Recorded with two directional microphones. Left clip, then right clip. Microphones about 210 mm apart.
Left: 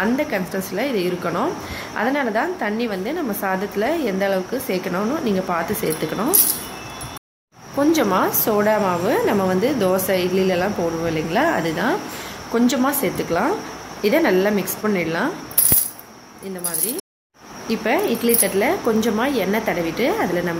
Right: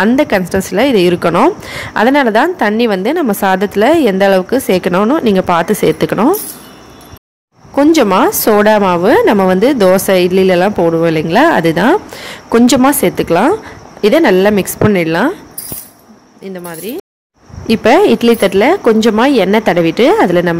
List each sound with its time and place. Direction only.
0.0 s a woman's voice: 45° right (ahead or behind)
7.9 s a woman's voice: 40° right (ahead or behind)
17.6 s speech: 45° right (ahead or behind)